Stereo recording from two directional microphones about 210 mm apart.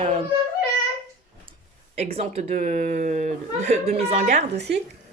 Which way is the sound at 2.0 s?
30° right (ahead or behind).